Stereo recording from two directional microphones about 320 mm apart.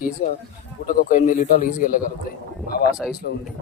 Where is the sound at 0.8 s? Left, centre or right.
Left.